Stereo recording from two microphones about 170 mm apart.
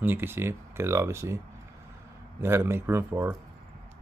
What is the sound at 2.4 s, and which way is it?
Speech, 15° right (ahead or behind).